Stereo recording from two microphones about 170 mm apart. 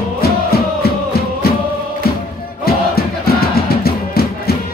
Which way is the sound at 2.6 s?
65° left (ahead or behind).